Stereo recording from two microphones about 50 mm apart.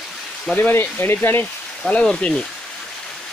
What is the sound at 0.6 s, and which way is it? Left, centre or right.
Speech, left.